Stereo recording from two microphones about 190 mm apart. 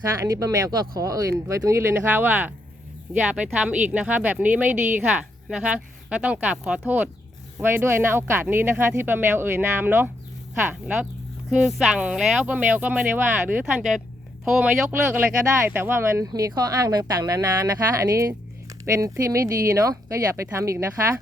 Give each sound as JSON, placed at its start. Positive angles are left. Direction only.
{"t": 0.3, "sound": "speech", "side_deg": -20}
{"t": 18.9, "sound": "speech", "side_deg": -15}